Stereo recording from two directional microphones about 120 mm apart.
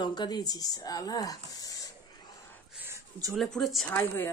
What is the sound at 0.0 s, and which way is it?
Speech, 40° left (ahead or behind).